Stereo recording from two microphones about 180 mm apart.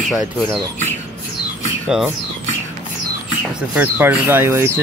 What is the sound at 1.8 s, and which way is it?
Mechanisms, 5° right (ahead or behind).